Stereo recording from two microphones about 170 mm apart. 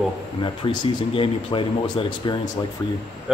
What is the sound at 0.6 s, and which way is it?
Speech, 30° left (ahead or behind).